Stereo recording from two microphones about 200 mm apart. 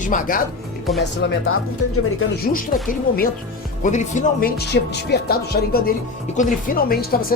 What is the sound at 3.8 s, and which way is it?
Speech, 40° left (ahead or behind).